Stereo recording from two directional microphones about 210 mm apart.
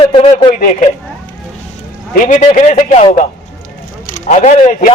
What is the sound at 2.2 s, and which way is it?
A man's voice, 35° left (ahead or behind).